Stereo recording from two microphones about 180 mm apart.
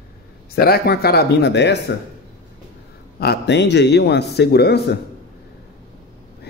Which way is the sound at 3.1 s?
60° left (ahead or behind).